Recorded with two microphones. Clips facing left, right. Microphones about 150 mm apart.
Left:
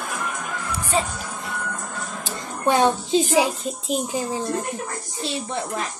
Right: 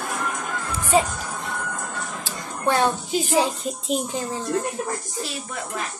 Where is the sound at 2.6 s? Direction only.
15° left (ahead or behind).